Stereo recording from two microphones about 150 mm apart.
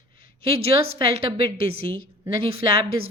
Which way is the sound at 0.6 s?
40° right (ahead or behind).